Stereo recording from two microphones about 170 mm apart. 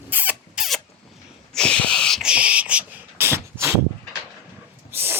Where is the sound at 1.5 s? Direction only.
5° left (ahead or behind); by 3.8 s 15° right (ahead or behind).